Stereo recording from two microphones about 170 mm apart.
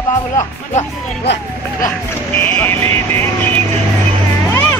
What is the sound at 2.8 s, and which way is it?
Speech, 35° right (ahead or behind).